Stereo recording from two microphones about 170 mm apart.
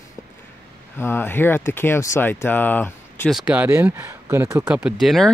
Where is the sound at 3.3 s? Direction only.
5° right (ahead or behind).